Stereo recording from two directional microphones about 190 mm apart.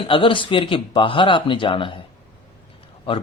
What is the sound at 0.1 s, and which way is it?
Speech, 25° left (ahead or behind).